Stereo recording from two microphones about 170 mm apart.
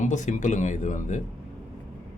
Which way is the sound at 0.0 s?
45° left (ahead or behind).